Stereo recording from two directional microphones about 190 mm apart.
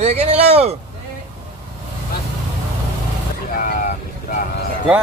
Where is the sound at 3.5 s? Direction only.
45° left (ahead or behind).